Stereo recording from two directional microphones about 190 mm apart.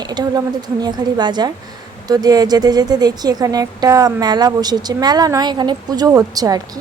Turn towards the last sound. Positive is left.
turn(degrees=-20)  # may be behind; listen again after turning